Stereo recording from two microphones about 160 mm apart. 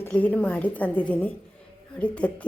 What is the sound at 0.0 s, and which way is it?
Speech, 10° left (ahead or behind).